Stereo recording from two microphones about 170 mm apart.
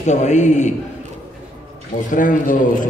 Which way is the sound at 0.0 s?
45° left (ahead or behind).